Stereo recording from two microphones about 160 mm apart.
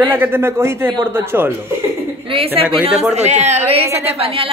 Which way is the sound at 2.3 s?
35° right (ahead or behind).